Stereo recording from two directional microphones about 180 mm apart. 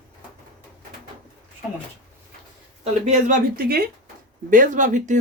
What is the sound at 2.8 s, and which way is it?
Speech, 40° right (ahead or behind).